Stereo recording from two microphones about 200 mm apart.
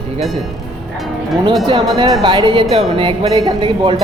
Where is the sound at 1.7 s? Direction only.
25° right (ahead or behind).